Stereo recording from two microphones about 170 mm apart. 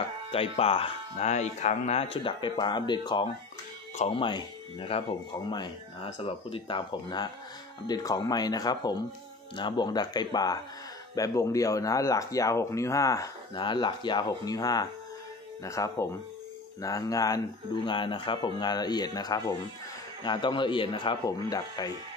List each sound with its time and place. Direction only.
0.3 s speech: 35° left (ahead or behind)
3.9 s speech: 35° left (ahead or behind)
6.0 s speech: 40° left (ahead or behind); by 21.9 s 20° left (ahead or behind)